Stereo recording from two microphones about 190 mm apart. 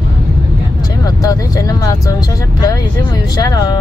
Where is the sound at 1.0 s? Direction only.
20° left (ahead or behind).